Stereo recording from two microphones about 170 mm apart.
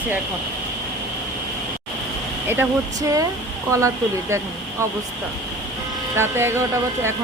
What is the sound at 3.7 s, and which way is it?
Music, 15° right (ahead or behind).